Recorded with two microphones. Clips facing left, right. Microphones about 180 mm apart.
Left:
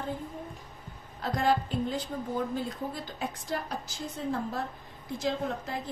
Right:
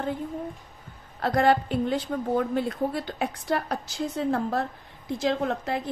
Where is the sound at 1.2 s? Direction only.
65° right (ahead or behind).